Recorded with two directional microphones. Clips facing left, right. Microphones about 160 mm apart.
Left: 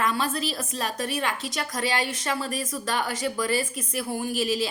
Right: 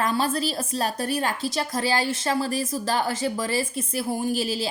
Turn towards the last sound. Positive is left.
turn(degrees=-35)  # may be behind; listen again after turning